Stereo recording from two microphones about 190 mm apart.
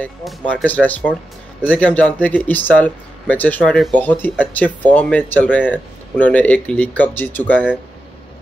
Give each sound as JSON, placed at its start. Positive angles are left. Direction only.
{"t": 0.0, "sound": "speech", "side_deg": 5}